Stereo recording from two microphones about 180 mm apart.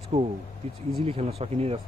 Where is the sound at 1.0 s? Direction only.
30° right (ahead or behind).